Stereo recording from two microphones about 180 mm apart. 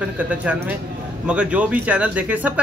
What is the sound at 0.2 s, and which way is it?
Speech, 10° right (ahead or behind).